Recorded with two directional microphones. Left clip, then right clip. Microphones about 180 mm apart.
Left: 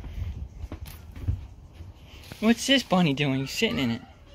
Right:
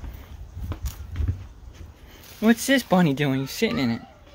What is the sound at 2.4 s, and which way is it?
Speech, 30° right (ahead or behind).